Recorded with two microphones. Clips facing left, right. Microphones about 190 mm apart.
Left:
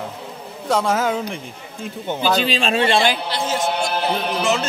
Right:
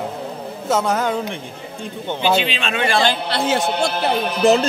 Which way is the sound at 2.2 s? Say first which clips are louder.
Even; 35° left (ahead or behind).